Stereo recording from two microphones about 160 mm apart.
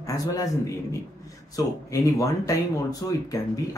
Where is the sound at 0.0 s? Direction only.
20° left (ahead or behind).